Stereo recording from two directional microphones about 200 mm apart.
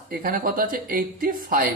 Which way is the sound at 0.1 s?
45° right (ahead or behind).